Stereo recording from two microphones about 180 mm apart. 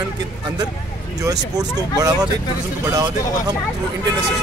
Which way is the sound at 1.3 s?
20° right (ahead or behind).